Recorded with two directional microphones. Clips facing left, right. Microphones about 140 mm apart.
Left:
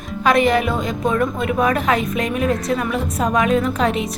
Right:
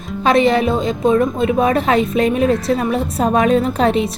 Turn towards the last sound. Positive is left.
turn(degrees=-30)  # may be behind; listen again after turning